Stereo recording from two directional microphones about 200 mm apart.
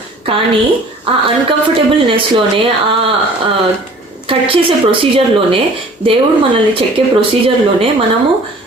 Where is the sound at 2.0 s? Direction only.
25° right (ahead or behind).